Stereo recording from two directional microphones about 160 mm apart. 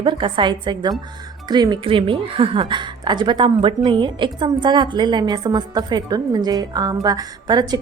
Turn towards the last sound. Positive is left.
turn(degrees=-25)  # may be behind; listen again after turning